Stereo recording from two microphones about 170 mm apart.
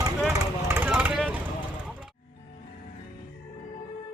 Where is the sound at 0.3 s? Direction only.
15° right (ahead or behind).